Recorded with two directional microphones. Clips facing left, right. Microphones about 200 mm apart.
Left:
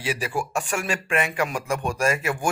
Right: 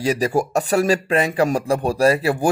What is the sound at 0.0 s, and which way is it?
Speech, 40° right (ahead or behind).